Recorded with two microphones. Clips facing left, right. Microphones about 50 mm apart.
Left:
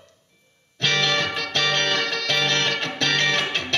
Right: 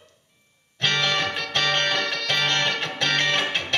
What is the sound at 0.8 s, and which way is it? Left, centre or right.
Music, centre.